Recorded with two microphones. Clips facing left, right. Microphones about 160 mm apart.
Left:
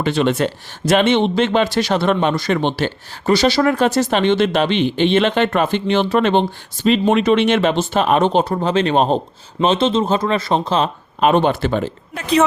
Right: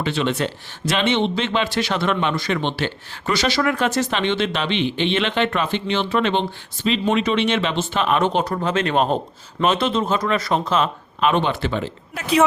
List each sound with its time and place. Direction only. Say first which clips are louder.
0.0 s speech: left 5 dB; 45° left (ahead or behind)
12.1 s speech: left 2 dB; 10° right (ahead or behind)